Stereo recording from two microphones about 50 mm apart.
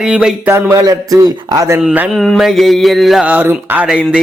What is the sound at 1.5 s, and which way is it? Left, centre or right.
Speech, right.